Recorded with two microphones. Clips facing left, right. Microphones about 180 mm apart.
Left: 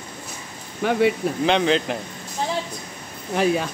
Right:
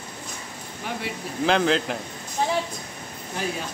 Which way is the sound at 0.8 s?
70° left (ahead or behind).